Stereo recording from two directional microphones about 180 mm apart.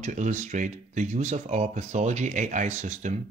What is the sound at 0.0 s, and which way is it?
Speech, 45° right (ahead or behind).